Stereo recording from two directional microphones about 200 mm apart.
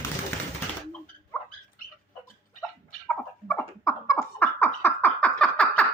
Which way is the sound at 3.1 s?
15° left (ahead or behind).